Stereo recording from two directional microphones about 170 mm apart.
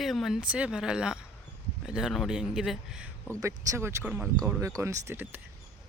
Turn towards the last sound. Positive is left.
turn(degrees=-10)  # may be behind; listen again after turning